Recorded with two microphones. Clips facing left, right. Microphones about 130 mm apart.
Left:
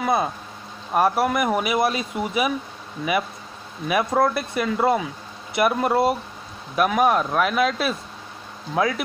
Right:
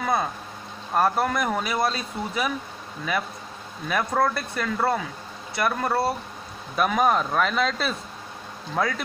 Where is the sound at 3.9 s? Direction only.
10° left (ahead or behind).